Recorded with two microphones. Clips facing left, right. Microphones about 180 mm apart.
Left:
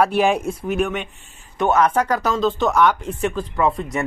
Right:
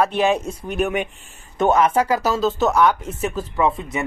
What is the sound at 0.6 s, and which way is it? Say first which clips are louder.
Speech: left 1 dB; centre (ahead or behind).